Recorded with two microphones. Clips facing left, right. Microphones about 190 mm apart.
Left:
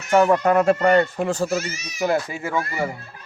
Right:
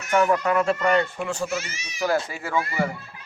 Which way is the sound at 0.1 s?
30° left (ahead or behind).